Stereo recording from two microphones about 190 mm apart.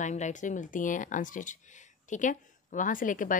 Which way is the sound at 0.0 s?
40° left (ahead or behind).